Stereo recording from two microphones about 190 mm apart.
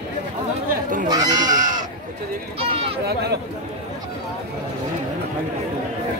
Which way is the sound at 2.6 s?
30° right (ahead or behind).